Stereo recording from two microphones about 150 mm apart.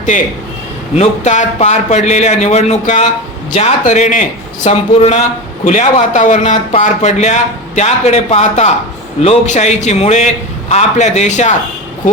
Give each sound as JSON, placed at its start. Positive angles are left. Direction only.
{"t": 0.1, "sound": "a man's voice", "side_deg": 55}
{"t": 4.6, "sound": "speech", "side_deg": 45}